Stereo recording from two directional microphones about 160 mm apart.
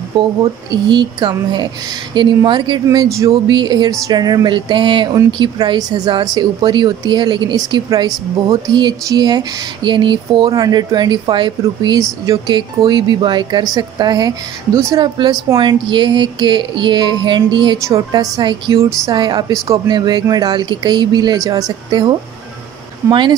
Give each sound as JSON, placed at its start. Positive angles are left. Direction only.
{"t": 0.4, "sound": "speech", "side_deg": -30}